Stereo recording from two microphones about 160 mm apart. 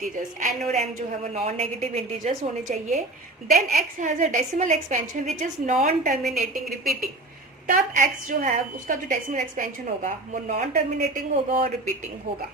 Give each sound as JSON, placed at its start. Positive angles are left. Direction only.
{"t": 0.0, "sound": "a woman's voice", "side_deg": -55}
{"t": 7.7, "sound": "a woman's voice", "side_deg": -55}